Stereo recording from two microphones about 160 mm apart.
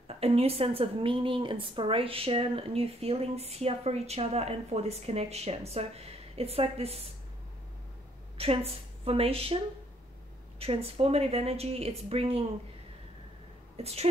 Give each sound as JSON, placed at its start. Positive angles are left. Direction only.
{"t": 0.1, "sound": "a woman's voice", "side_deg": -40}
{"t": 8.4, "sound": "a woman's voice", "side_deg": -35}
{"t": 10.6, "sound": "a woman's voice", "side_deg": -40}
{"t": 13.7, "sound": "a woman's voice", "side_deg": -40}